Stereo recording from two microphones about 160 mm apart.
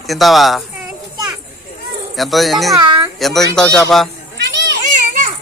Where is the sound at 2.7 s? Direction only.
25° right (ahead or behind).